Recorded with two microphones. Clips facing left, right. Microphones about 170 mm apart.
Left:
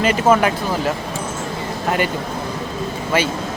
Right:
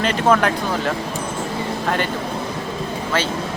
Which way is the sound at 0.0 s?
5° left (ahead or behind).